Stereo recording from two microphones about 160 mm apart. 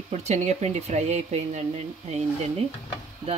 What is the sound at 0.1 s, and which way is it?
Speech, 45° right (ahead or behind).